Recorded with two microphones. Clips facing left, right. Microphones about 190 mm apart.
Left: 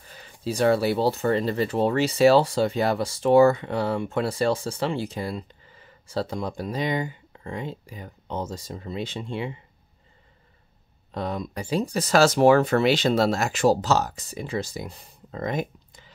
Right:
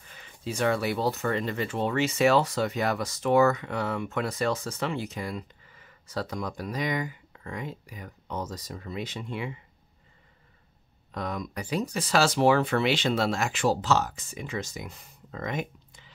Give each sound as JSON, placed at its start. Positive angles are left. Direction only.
{"t": 0.0, "sound": "speech", "side_deg": 35}
{"t": 11.1, "sound": "speech", "side_deg": 30}